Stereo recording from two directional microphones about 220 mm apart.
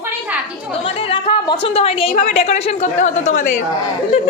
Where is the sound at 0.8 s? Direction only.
25° left (ahead or behind).